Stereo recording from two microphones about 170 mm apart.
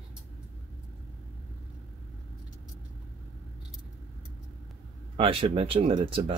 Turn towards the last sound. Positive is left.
turn(degrees=-35)  # may be behind; listen again after turning